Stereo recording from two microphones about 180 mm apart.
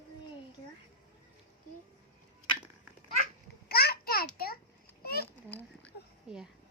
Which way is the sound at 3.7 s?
60° left (ahead or behind).